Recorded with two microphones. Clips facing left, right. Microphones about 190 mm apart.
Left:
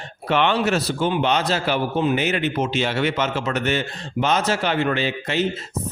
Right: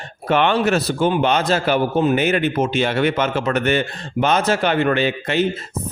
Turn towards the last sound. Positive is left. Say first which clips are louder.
# right 4 dB
turn(degrees=-55)  # may be behind; listen again after turning